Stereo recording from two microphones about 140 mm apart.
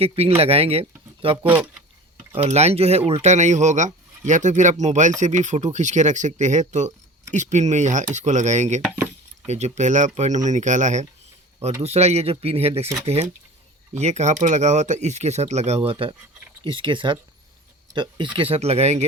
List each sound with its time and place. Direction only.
0.0 s speech: 45° right (ahead or behind)
1.4 s speech: 10° right (ahead or behind)
2.3 s speech: 45° right (ahead or behind)
11.8 s speech: 50° right (ahead or behind)
14.0 s speech: 55° right (ahead or behind)